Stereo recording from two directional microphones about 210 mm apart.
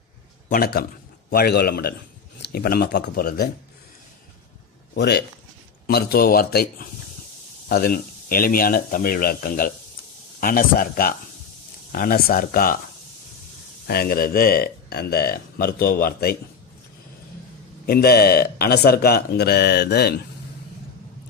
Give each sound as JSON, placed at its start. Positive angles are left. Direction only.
{"t": 0.5, "sound": "speech", "side_deg": 45}
{"t": 4.9, "sound": "speech", "side_deg": 50}
{"t": 13.8, "sound": "speech", "side_deg": 45}
{"t": 17.8, "sound": "speech", "side_deg": 45}